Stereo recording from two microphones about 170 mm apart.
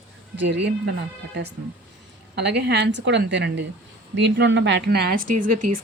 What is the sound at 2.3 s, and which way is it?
A woman's voice, 80° right.